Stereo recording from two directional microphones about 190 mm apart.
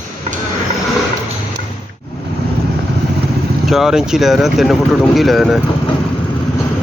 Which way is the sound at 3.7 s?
Centre (ahead or behind).